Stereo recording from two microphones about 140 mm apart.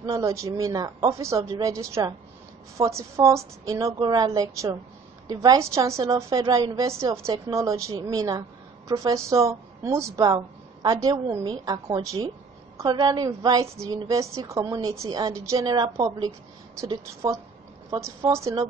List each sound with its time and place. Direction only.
0.0 s a woman's voice: 25° right (ahead or behind)
17.9 s a woman's voice: 20° right (ahead or behind)